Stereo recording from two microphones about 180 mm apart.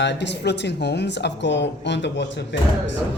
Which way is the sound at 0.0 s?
75° left (ahead or behind).